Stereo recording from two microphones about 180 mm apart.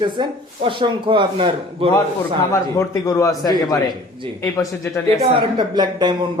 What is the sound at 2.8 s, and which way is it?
A man's voice, 15° left (ahead or behind).